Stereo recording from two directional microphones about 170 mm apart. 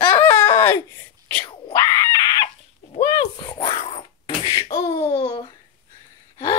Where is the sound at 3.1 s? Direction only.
25° left (ahead or behind).